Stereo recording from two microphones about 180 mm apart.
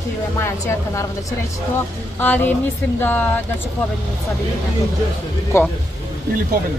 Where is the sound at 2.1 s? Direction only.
10° left (ahead or behind).